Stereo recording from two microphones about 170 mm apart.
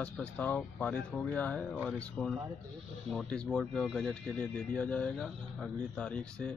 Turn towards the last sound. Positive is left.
turn(degrees=5)  # may be behind; listen again after turning